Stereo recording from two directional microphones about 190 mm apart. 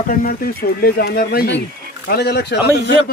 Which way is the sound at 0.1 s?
50° left (ahead or behind).